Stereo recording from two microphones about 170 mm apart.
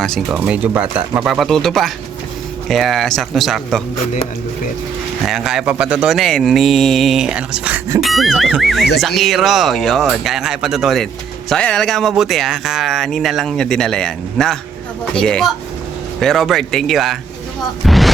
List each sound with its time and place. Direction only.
0.0 s speech: 5° left (ahead or behind)
0.4 s speech: 10° right (ahead or behind)
4.1 s speech: 45° left (ahead or behind)
5.2 s speech: centre (ahead or behind)
17.8 s music: centre (ahead or behind)